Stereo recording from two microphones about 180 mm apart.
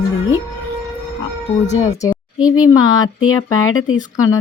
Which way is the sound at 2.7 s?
20° left (ahead or behind).